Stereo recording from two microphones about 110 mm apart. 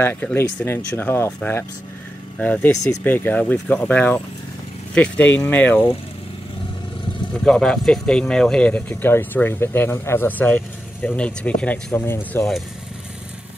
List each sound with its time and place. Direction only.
0.0 s speech: 15° left (ahead or behind)
7.3 s speech: 5° left (ahead or behind)